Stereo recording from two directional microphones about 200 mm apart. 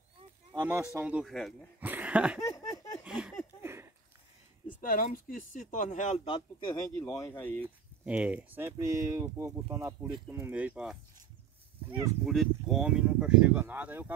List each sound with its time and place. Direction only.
0.5 s speech: 10° right (ahead or behind)
1.9 s a sound: 10° right (ahead or behind)
2.4 s speech: 15° left (ahead or behind)
3.0 s speech: 5° right (ahead or behind)
3.6 s a sound: 15° right (ahead or behind)
4.8 s speech: 45° left (ahead or behind); by 6.8 s 25° left (ahead or behind)
7.0 s speech: 10° left (ahead or behind)
7.6 s speech: 5° right (ahead or behind)
12.3 s speech: centre (ahead or behind)